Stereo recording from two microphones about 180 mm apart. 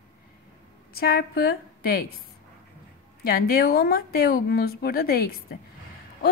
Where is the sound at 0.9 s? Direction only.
60° left (ahead or behind).